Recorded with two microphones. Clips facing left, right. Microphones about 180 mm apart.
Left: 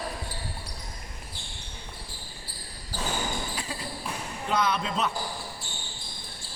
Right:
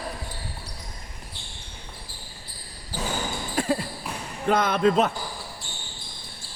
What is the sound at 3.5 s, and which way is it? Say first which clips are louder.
Basketball bounce: right 12 dB; 50° right (ahead or behind).